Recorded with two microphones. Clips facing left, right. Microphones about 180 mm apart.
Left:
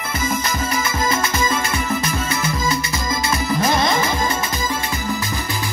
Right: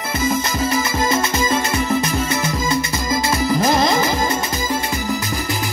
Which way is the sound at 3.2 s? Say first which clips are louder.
Right 2 dB; 30° right (ahead or behind).